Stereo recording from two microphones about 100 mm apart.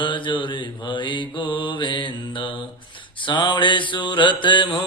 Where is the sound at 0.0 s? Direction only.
55° left (ahead or behind).